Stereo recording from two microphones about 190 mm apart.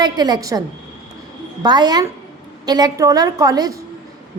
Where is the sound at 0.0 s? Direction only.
20° right (ahead or behind).